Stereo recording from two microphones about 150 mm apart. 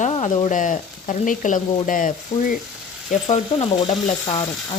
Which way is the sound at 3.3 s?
45° left (ahead or behind).